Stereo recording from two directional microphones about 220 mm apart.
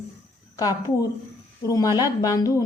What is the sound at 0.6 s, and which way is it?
A woman's voice, 15° left (ahead or behind).